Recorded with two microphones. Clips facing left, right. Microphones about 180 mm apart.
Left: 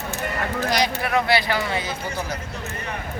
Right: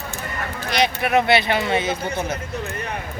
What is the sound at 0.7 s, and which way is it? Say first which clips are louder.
Speech: right 4 dB; 20° right (ahead or behind).